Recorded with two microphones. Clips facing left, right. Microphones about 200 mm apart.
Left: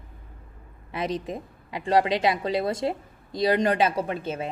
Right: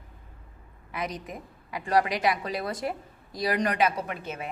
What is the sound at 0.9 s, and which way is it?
A woman's voice, 25° left (ahead or behind).